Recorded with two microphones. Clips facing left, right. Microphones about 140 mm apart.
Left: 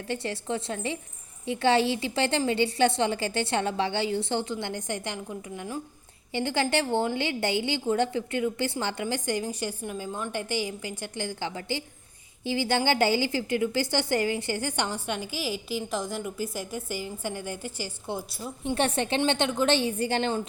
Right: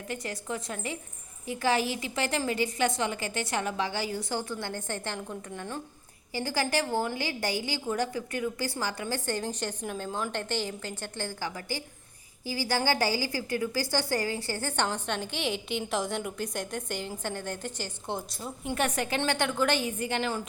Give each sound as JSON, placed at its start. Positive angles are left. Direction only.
{"t": 0.1, "sound": "a woman's voice", "side_deg": 30}
{"t": 6.3, "sound": "a woman's voice", "side_deg": 25}
{"t": 18.7, "sound": "a woman's voice", "side_deg": 30}